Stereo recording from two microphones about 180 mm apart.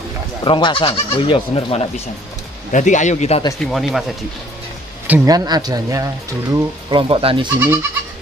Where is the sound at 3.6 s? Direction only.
Centre (ahead or behind).